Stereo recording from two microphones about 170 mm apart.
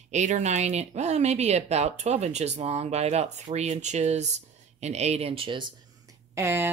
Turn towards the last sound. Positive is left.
turn(degrees=-15)  # may be behind; listen again after turning